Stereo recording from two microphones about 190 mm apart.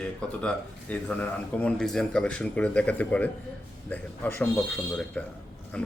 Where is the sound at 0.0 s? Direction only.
5° left (ahead or behind).